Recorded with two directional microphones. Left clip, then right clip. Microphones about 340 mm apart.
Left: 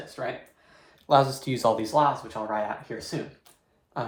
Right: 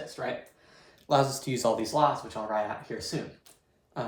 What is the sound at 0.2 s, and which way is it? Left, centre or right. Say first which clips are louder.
Speech: left 2 dB; centre.